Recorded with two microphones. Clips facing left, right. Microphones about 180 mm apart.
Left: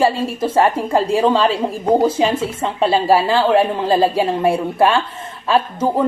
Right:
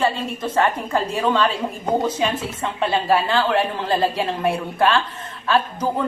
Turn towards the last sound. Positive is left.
turn(degrees=25)  # may be behind; listen again after turning